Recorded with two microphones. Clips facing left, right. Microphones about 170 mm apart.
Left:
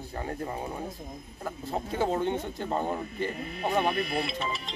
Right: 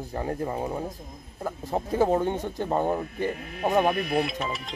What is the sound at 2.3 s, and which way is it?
Speech, 15° right (ahead or behind).